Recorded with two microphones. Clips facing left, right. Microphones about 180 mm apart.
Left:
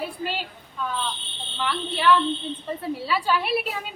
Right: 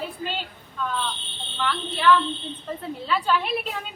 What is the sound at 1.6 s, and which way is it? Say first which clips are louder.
A woman's voice: right 1 dB; 10° left (ahead or behind).